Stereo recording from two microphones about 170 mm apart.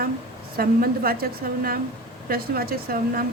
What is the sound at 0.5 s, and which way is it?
A woman's voice, 60° right (ahead or behind).